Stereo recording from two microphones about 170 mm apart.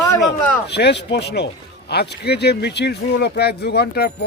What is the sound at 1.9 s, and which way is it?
Speech, 70° left (ahead or behind).